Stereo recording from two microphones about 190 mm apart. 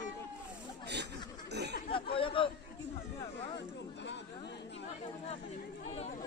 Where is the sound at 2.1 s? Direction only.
25° left (ahead or behind).